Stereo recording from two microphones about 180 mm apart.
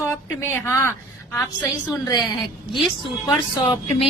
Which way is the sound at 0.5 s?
15° left (ahead or behind).